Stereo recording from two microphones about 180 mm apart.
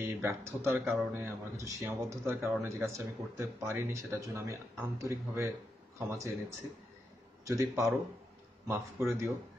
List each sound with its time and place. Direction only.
0.0 s speech: 15° right (ahead or behind)
0.7 s speech: centre (ahead or behind)
1.1 s speech: 15° right (ahead or behind)
7.4 s speech: 15° right (ahead or behind)